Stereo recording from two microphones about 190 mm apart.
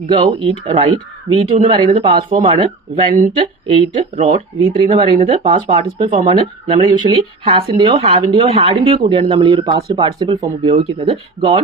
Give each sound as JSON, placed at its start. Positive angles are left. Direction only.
{"t": 0.1, "sound": "speech", "side_deg": -30}